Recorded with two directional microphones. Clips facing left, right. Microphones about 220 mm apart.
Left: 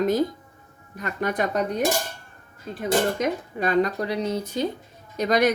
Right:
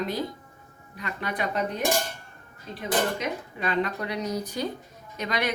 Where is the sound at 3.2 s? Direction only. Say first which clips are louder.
Left 6 dB; 45° left (ahead or behind); by 4.6 s 25° left (ahead or behind).